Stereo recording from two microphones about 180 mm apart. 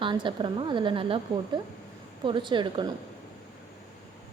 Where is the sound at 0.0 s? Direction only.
25° right (ahead or behind).